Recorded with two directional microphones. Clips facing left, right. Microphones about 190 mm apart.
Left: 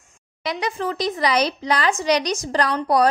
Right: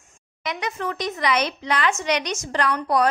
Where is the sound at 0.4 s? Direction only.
35° left (ahead or behind).